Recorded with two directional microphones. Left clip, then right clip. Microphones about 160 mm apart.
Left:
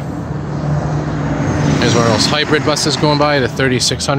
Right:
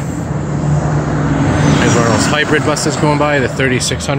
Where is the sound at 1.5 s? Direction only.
60° left (ahead or behind).